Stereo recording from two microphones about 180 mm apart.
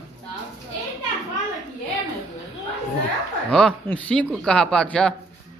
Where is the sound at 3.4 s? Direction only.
5° left (ahead or behind).